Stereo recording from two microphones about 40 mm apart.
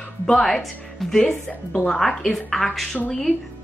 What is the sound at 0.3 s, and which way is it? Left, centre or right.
Speech, centre.